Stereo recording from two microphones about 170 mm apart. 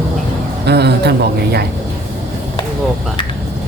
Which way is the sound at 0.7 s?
75° right (ahead or behind).